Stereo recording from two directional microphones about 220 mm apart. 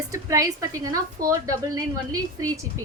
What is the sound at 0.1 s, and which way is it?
A woman's voice, 15° right (ahead or behind).